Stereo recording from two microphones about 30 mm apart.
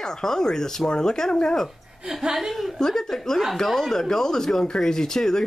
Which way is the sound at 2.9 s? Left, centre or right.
Centre.